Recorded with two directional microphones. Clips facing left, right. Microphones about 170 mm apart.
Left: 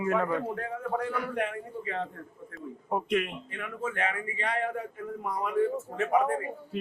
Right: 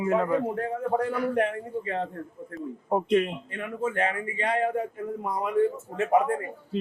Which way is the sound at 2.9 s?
30° right (ahead or behind).